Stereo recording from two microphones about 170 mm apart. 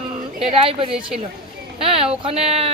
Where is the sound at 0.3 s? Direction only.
35° right (ahead or behind).